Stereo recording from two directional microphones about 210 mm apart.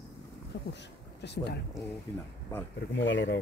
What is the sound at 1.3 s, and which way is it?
Speech, 55° left (ahead or behind).